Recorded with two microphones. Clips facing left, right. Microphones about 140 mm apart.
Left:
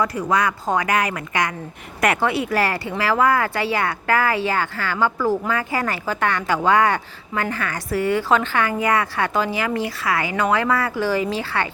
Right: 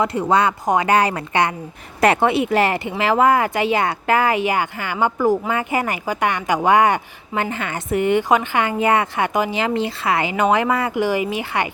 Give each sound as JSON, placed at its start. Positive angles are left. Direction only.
{"t": 0.0, "sound": "speech", "side_deg": -25}